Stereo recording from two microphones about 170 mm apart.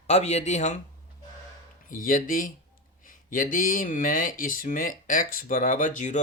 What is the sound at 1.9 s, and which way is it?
Speech, 50° left (ahead or behind).